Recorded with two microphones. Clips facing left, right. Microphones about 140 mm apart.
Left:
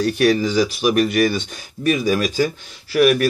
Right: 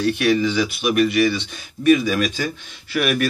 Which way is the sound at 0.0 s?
40° left (ahead or behind).